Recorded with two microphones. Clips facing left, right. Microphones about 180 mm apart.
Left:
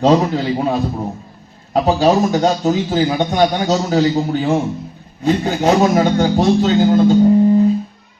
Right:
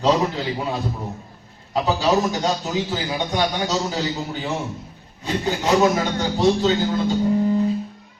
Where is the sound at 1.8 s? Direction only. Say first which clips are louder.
Left 6 dB; 50° left (ahead or behind).